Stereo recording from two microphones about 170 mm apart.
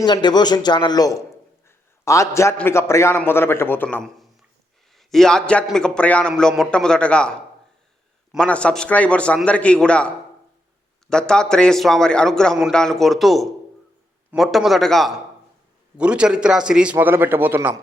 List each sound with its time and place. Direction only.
0.0 s a man's voice: 25° left (ahead or behind); by 10.1 s 5° left (ahead or behind)
11.1 s a man's voice: 5° left (ahead or behind); by 17.7 s 10° right (ahead or behind)